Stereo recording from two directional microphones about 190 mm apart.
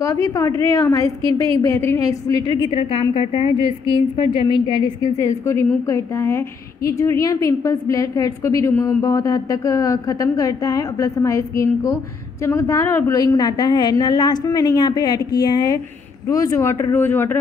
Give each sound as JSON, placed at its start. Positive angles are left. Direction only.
{"t": 0.0, "sound": "a woman's voice", "side_deg": 15}